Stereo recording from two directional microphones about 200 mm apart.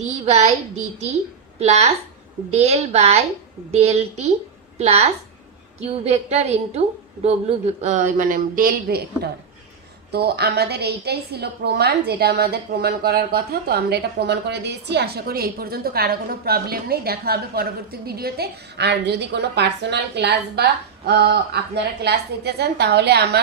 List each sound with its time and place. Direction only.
0.0 s a woman's voice: 35° right (ahead or behind)
1.6 s a man's voice: 35° right (ahead or behind); by 23.4 s 55° right (ahead or behind)